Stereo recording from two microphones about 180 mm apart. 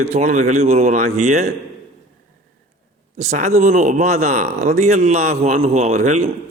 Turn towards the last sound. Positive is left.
turn(degrees=-40)  # may be behind; listen again after turning